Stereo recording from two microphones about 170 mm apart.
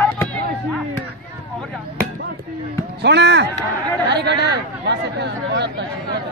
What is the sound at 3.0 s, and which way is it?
Speech, 90° right.